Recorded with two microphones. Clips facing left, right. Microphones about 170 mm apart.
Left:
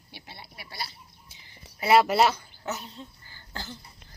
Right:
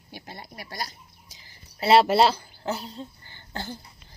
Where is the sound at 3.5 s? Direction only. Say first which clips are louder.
Right 5 dB; 50° right (ahead or behind).